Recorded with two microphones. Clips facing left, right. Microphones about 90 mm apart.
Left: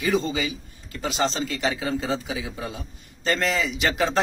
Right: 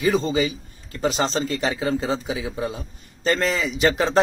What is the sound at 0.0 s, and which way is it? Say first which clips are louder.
A man's voice: right 4 dB; 30° right (ahead or behind).